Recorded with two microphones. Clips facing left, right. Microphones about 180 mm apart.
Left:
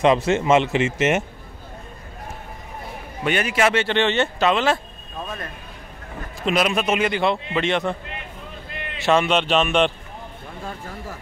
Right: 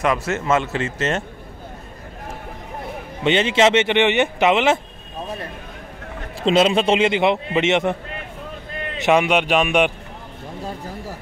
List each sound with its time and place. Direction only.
0.0 s a man's voice: 20° left (ahead or behind)
3.3 s a man's voice: 25° right (ahead or behind)
6.4 s a man's voice: 25° right (ahead or behind)